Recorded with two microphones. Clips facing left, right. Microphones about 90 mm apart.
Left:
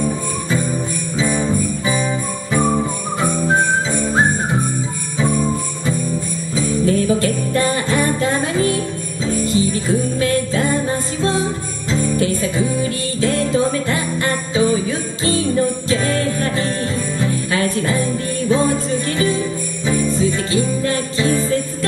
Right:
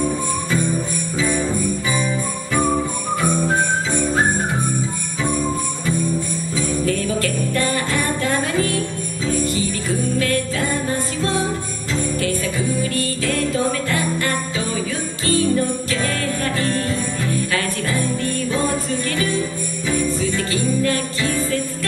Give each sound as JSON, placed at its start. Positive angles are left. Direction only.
{"t": 1.1, "sound": "jingle bell", "side_deg": 20}
{"t": 6.5, "sound": "jingle bell", "side_deg": 20}
{"t": 9.3, "sound": "music", "side_deg": 25}
{"t": 11.9, "sound": "jingle bell", "side_deg": 25}
{"t": 15.9, "sound": "music", "side_deg": 25}
{"t": 17.2, "sound": "jingle bell", "side_deg": 25}
{"t": 18.5, "sound": "music", "side_deg": 20}
{"t": 19.9, "sound": "jingle bell", "side_deg": 25}